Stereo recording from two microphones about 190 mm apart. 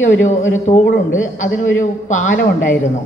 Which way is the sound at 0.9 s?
90° left.